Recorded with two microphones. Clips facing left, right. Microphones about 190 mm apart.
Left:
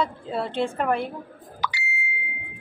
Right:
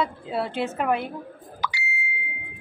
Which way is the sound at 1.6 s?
55° left (ahead or behind).